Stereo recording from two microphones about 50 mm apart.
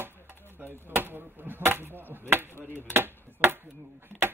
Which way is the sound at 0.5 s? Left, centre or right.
Right.